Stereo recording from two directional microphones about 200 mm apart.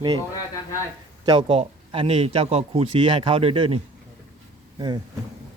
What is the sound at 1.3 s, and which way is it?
Speech, 25° right (ahead or behind).